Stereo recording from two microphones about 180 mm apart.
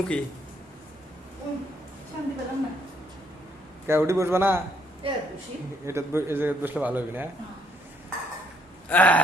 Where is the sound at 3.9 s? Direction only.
15° right (ahead or behind).